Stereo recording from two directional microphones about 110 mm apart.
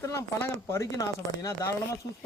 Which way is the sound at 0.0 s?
25° left (ahead or behind).